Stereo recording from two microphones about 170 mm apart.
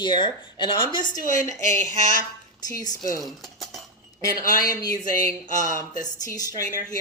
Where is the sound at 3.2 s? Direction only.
Centre (ahead or behind).